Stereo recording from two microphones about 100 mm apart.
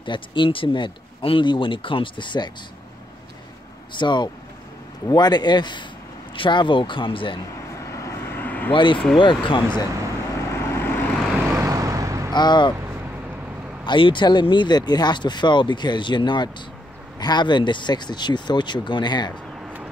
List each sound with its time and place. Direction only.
0.0 s speech: 55° left (ahead or behind)
4.0 s speech: 50° left (ahead or behind)
7.5 s vehicle: 30° left (ahead or behind)
8.7 s speech: 55° left (ahead or behind)
10.3 s vehicle: 25° left (ahead or behind)
11.5 s vehicle: 30° right (ahead or behind)
12.3 s speech: 45° left (ahead or behind)
13.8 s speech: 55° left (ahead or behind)
19.6 s vehicle: 10° right (ahead or behind)